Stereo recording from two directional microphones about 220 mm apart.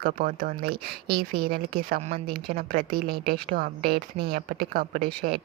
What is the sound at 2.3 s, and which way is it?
A woman's voice, 45° right (ahead or behind).